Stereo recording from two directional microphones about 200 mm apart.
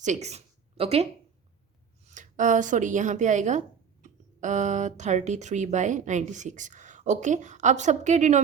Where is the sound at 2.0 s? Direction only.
40° right (ahead or behind).